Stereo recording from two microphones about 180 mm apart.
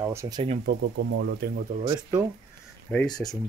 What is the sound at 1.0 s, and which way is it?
Speech, 70° right (ahead or behind).